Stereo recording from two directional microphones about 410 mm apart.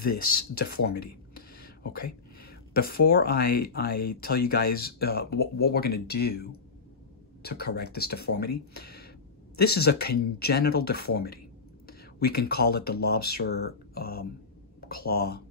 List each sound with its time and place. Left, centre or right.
0.0 s speech: left